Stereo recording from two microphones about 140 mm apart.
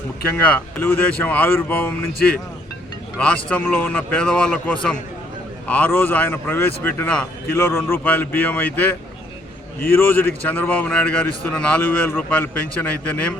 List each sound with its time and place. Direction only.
0.3 s speech: 15° left (ahead or behind)